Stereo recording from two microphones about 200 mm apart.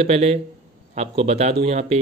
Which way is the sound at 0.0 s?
30° right (ahead or behind).